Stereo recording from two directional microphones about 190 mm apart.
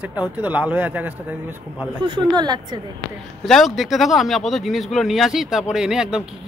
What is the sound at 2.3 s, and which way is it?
Speech, 20° right (ahead or behind).